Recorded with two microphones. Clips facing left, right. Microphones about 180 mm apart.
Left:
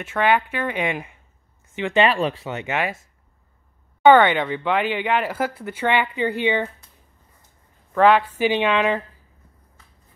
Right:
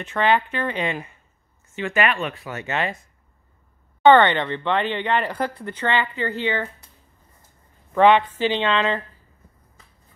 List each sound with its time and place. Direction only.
0.0 s speech: 5° left (ahead or behind)
2.0 s speech: 30° left (ahead or behind)
2.6 s speech: 10° left (ahead or behind)
4.0 s speech: 5° left (ahead or behind)
7.9 s speech: centre (ahead or behind)